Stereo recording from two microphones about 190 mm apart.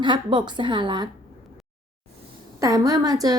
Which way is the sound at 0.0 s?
25° right (ahead or behind).